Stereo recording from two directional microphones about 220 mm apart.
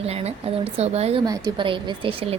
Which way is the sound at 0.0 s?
30° right (ahead or behind).